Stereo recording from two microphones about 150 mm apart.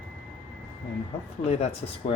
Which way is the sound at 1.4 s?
45° left (ahead or behind).